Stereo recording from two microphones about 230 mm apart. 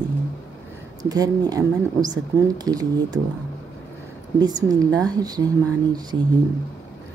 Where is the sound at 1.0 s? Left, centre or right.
Centre.